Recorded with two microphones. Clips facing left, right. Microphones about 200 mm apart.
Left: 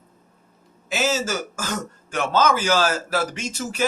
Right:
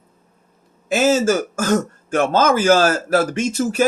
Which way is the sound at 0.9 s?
50° right (ahead or behind).